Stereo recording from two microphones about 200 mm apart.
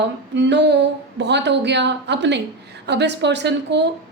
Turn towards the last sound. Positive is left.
turn(degrees=-60)  # may be behind; listen again after turning